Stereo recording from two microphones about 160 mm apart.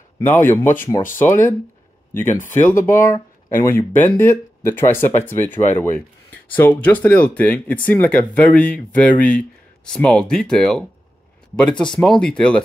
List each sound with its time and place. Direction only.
0.2 s speech: 15° left (ahead or behind)